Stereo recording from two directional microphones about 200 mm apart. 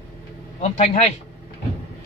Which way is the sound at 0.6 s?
35° left (ahead or behind).